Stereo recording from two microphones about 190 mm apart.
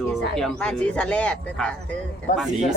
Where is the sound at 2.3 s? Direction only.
45° left (ahead or behind).